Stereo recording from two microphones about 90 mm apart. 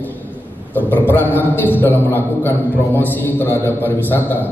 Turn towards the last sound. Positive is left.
turn(degrees=20)  # may be behind; listen again after turning